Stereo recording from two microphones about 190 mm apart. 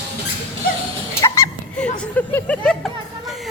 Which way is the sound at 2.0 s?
10° left (ahead or behind).